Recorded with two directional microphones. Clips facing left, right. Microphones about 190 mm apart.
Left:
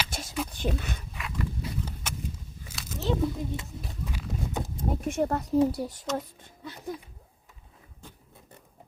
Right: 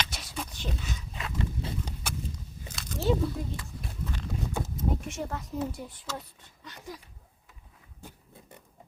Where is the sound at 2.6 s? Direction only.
5° left (ahead or behind).